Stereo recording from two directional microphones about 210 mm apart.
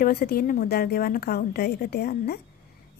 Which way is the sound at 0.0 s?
45° left (ahead or behind).